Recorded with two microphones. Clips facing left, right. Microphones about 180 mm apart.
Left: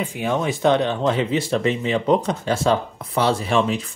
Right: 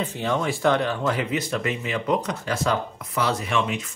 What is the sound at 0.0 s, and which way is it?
Speech, 15° left (ahead or behind).